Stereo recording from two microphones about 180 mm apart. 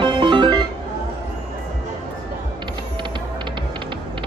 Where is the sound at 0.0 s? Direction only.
25° right (ahead or behind).